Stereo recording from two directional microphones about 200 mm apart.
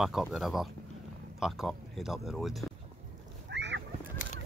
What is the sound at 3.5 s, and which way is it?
Fowl, 60° right (ahead or behind).